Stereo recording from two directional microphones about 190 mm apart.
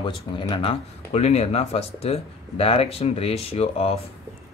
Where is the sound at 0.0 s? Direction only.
25° left (ahead or behind).